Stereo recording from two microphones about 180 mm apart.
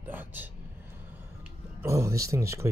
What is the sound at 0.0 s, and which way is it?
Vehicle, 10° right (ahead or behind).